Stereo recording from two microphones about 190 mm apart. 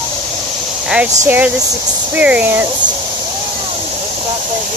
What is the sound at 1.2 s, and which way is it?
Speech, 10° right (ahead or behind).